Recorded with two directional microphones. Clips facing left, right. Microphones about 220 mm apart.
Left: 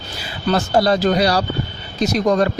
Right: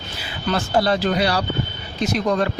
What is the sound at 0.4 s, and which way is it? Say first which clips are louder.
Speech: left 3 dB; 40° left (ahead or behind).